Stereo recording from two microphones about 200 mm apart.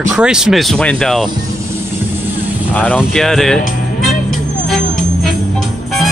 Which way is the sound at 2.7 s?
5° left (ahead or behind).